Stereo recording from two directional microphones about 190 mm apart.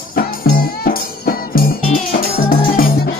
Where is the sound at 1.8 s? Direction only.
40° left (ahead or behind).